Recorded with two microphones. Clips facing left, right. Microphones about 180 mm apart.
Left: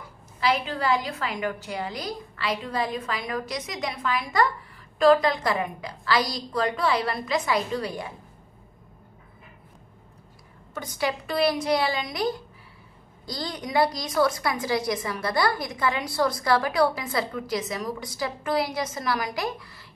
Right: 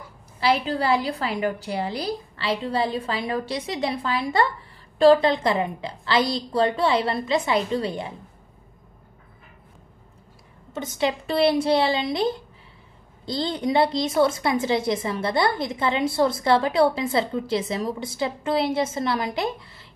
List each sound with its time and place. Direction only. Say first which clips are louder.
0.4 s a woman's voice: right 3 dB; 35° right (ahead or behind)
10.7 s a woman's voice: right 4 dB; 25° right (ahead or behind)